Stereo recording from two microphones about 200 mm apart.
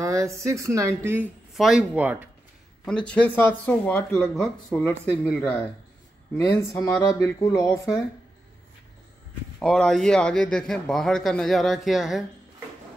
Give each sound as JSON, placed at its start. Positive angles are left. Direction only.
{"t": 0.0, "sound": "a sound", "side_deg": -15}
{"t": 0.4, "sound": "speech", "side_deg": -15}
{"t": 2.8, "sound": "a man's voice", "side_deg": 5}
{"t": 9.6, "sound": "a man's voice", "side_deg": 5}